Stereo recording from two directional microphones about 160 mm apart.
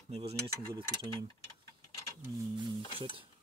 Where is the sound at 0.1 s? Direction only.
40° right (ahead or behind).